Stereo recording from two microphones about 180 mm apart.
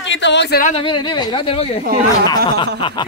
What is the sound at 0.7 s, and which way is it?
Speech, 25° left (ahead or behind).